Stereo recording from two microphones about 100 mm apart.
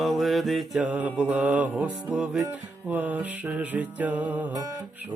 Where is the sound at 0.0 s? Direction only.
Centre (ahead or behind).